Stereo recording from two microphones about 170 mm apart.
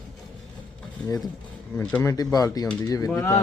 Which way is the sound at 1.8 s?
10° left (ahead or behind).